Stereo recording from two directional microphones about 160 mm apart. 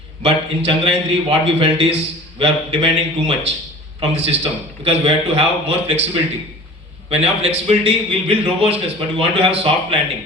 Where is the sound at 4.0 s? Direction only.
40° right (ahead or behind).